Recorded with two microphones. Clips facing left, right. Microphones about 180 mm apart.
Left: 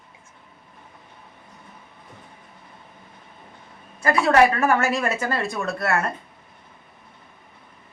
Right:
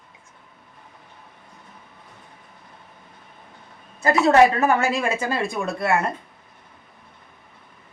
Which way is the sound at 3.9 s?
25° right (ahead or behind).